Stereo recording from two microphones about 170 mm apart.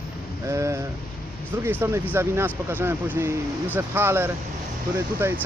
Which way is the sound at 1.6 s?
15° right (ahead or behind).